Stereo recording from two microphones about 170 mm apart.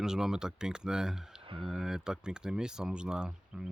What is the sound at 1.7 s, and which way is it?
Speech, 5° right (ahead or behind).